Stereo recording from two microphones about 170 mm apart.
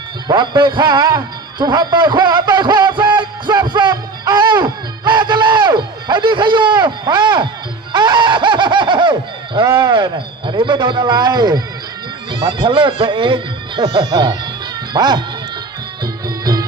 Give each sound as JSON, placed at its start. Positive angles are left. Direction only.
{"t": 0.3, "sound": "a man's voice", "side_deg": -25}
{"t": 7.9, "sound": "fowl", "side_deg": -25}
{"t": 9.6, "sound": "a man's voice", "side_deg": -25}
{"t": 16.2, "sound": "music", "side_deg": -20}